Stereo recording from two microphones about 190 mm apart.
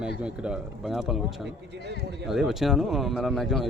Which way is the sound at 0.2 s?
5° right (ahead or behind).